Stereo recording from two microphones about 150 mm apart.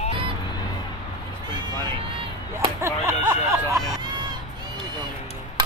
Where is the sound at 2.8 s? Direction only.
20° right (ahead or behind).